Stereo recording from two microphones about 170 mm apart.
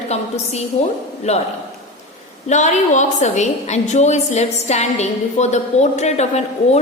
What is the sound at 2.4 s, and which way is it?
A woman's voice, 45° left (ahead or behind).